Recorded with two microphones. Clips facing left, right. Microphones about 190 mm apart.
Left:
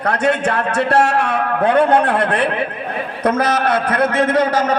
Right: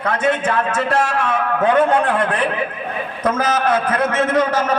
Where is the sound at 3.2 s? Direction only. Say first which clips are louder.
Left 2 dB; 35° left (ahead or behind).